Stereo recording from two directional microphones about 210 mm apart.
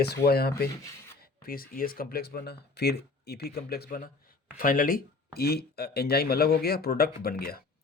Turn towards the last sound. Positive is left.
turn(degrees=45)  # may be behind; listen again after turning